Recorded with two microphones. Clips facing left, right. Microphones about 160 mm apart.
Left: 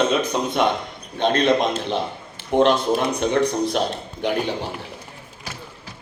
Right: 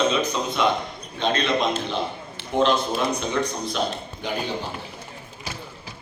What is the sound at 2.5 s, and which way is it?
A man's voice, 65° left (ahead or behind).